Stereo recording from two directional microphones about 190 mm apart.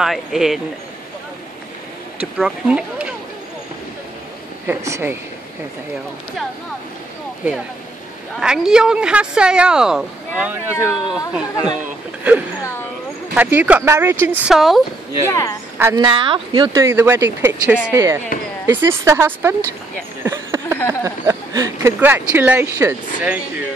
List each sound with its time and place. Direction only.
0.0 s a woman's voice: centre (ahead or behind)
2.3 s a woman's voice: 5° right (ahead or behind)
4.6 s speech: 15° right (ahead or behind)
8.4 s a woman's voice: 5° right (ahead or behind)
13.3 s a woman's voice: 10° right (ahead or behind)
15.2 s speech: 15° left (ahead or behind)
15.8 s speech: 20° right (ahead or behind)
20.2 s a sound: 15° right (ahead or behind)
21.0 s speech: 15° right (ahead or behind)